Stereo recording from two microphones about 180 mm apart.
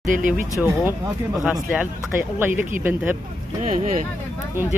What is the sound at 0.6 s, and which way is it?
Speech, 15° right (ahead or behind).